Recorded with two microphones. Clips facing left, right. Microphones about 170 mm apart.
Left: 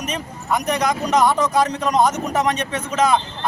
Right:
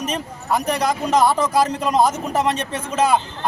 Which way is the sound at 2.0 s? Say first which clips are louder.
Even; 30° right (ahead or behind).